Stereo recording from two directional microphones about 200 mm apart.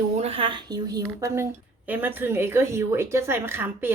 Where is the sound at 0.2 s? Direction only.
30° right (ahead or behind).